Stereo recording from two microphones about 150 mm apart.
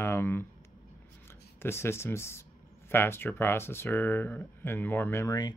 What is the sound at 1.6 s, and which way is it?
Speech, 15° left (ahead or behind).